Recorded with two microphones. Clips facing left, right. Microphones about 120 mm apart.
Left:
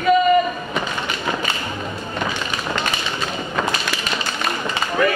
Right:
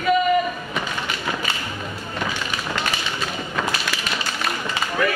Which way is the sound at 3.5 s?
25° left (ahead or behind).